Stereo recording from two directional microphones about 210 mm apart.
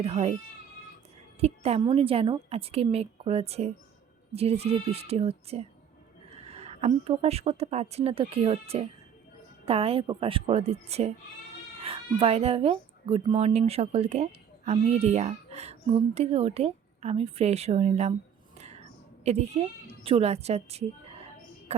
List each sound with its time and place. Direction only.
0.0 s speech: 30° right (ahead or behind)
1.4 s a woman's voice: 30° right (ahead or behind)
18.5 s whispering: 30° right (ahead or behind)
20.1 s speech: 30° right (ahead or behind)